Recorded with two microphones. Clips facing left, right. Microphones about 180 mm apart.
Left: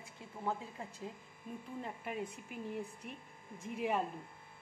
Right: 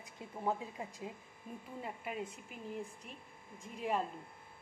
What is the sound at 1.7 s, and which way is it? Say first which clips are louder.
Speech: even; 5° right (ahead or behind).